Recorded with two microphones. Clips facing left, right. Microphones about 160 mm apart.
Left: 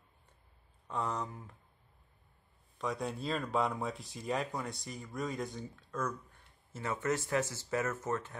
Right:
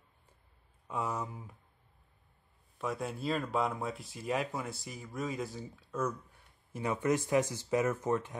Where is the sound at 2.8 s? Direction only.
5° right (ahead or behind).